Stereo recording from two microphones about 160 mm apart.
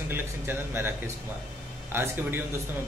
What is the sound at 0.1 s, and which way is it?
Speech, 15° right (ahead or behind).